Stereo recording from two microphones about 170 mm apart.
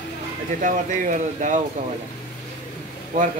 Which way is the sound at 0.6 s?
50° right (ahead or behind).